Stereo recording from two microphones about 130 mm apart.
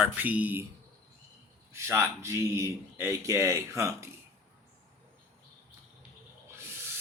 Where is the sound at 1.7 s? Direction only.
20° right (ahead or behind).